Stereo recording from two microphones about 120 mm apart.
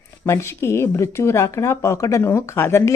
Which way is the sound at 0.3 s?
20° left (ahead or behind).